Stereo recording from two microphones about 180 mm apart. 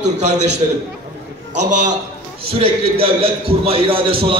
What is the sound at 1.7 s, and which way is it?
Speech, 45° right (ahead or behind).